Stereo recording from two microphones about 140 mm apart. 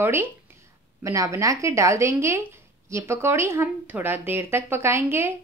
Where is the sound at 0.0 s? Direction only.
15° right (ahead or behind).